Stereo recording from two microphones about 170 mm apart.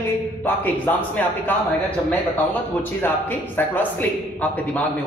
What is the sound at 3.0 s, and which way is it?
Speech, 10° left (ahead or behind).